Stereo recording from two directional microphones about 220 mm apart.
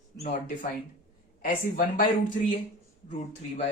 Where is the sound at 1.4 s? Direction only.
40° left (ahead or behind).